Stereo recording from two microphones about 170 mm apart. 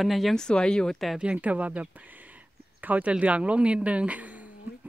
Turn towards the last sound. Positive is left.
turn(degrees=-10)  # may be behind; listen again after turning